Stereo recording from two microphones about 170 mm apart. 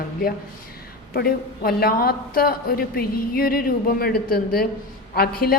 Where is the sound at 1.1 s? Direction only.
65° left (ahead or behind).